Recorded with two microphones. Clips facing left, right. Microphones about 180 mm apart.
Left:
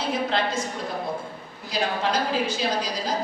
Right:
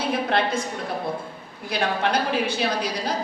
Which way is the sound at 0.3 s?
60° right (ahead or behind).